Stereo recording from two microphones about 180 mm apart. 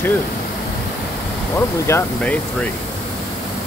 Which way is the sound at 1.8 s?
10° left (ahead or behind).